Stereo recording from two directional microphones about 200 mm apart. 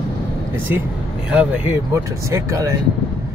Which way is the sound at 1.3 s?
5° right (ahead or behind).